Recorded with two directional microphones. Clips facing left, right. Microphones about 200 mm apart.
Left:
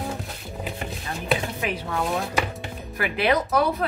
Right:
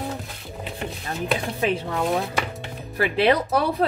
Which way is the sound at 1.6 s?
30° right (ahead or behind).